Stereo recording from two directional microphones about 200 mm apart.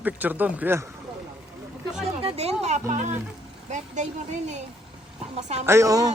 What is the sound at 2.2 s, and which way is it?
A woman's voice, 30° right (ahead or behind).